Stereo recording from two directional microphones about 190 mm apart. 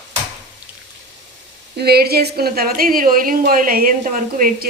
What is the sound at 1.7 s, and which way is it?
A woman's voice, 55° right (ahead or behind).